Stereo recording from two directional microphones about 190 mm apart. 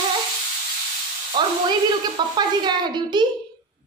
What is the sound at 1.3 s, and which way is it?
A woman's voice, 25° right (ahead or behind).